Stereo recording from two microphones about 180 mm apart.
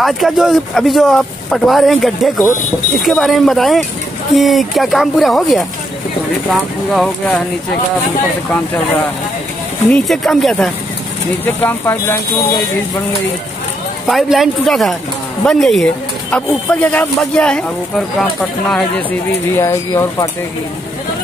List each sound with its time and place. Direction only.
0.0 s speech: centre (ahead or behind)
8.5 s speech: 10° left (ahead or behind)
14.0 s speech: centre (ahead or behind)
19.5 s speech: 15° left (ahead or behind)